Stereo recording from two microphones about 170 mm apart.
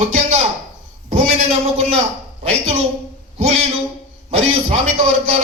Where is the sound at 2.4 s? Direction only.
35° right (ahead or behind).